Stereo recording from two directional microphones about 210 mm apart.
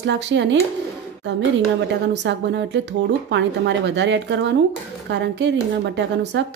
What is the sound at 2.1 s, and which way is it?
Speech, 55° right (ahead or behind).